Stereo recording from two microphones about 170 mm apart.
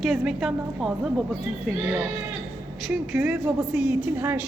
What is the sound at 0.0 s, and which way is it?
Speech, centre (ahead or behind).